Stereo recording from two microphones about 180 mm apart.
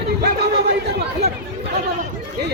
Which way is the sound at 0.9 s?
65° right (ahead or behind).